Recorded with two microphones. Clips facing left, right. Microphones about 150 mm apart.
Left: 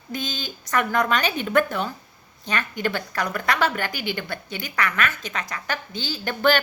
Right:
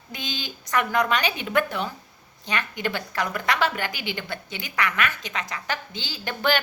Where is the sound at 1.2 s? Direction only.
45° left (ahead or behind).